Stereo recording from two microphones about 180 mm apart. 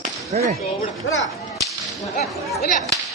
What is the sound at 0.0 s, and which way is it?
Whip, 40° right (ahead or behind).